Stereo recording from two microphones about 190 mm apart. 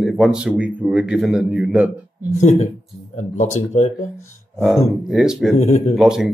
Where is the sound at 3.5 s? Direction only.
40° left (ahead or behind).